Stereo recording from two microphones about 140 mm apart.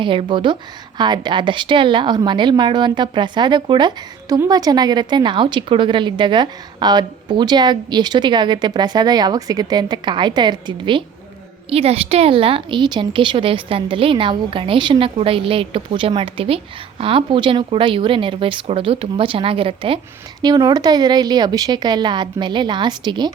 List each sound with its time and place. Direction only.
0.0 s a woman's voice: 35° right (ahead or behind)
11.7 s a woman's voice: 45° right (ahead or behind)
20.4 s a woman's voice: 30° right (ahead or behind)